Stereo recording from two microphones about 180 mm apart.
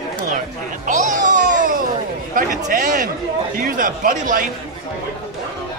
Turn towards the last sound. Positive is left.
turn(degrees=-50)  # may be behind; listen again after turning